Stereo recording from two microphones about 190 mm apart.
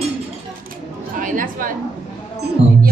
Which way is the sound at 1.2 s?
45° right (ahead or behind).